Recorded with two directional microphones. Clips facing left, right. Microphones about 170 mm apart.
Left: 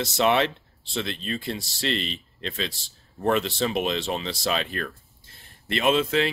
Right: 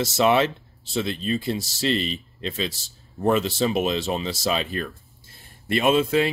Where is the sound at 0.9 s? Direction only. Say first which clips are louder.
Right 5 dB; 5° right (ahead or behind).